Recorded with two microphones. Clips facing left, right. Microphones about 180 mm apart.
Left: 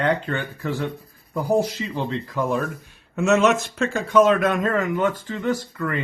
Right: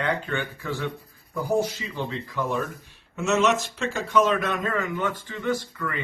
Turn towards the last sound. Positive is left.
turn(degrees=45)  # may be behind; listen again after turning